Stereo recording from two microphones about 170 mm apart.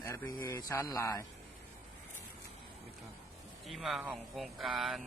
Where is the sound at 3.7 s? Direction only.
Centre (ahead or behind).